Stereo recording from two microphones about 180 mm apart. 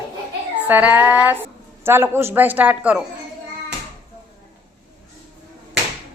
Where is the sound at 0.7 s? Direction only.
10° right (ahead or behind).